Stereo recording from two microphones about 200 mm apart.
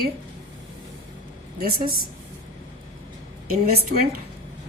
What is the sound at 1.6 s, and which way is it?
Speech, 50° right (ahead or behind).